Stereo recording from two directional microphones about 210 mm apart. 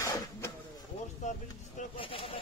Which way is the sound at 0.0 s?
15° left (ahead or behind).